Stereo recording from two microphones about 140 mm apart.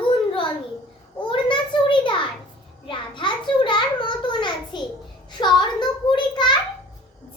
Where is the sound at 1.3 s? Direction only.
35° left (ahead or behind).